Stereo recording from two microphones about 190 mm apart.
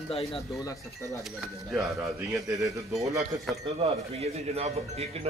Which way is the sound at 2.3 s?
15° right (ahead or behind).